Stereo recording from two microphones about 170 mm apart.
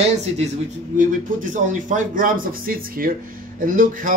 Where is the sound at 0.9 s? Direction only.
50° right (ahead or behind).